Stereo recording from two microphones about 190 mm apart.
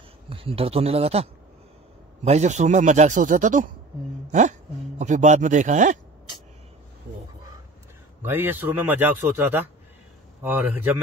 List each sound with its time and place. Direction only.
0.3 s speech: 30° right (ahead or behind)
8.2 s a man's voice: 10° right (ahead or behind)